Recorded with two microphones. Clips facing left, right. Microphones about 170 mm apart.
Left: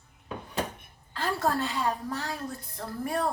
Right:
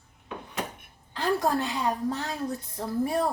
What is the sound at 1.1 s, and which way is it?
A woman's voice, 15° right (ahead or behind).